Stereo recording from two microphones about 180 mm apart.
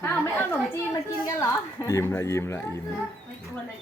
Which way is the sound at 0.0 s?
10° left (ahead or behind).